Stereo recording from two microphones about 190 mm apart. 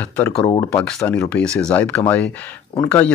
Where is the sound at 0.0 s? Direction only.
10° left (ahead or behind).